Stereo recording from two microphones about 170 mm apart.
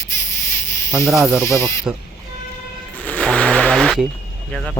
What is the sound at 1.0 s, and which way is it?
Speech, 5° right (ahead or behind).